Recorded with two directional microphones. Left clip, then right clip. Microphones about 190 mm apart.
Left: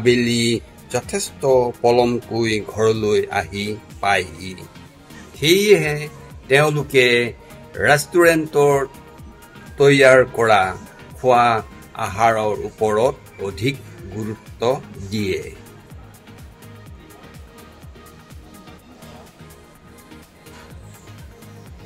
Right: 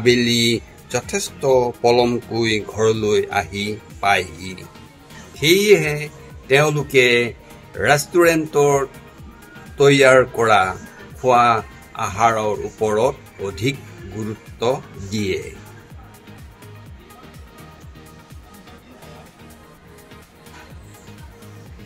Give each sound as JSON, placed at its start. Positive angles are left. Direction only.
{"t": 0.0, "sound": "speech", "side_deg": -5}
{"t": 0.3, "sound": "a man's voice", "side_deg": 55}
{"t": 0.6, "sound": "speech", "side_deg": 0}